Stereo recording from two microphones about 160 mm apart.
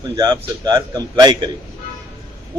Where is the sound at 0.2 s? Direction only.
25° right (ahead or behind).